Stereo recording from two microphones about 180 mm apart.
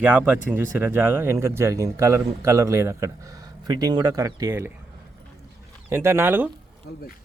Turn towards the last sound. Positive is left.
turn(degrees=-10)  # may be behind; listen again after turning